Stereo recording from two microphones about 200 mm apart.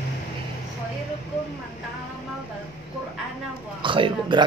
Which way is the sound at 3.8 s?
25° right (ahead or behind).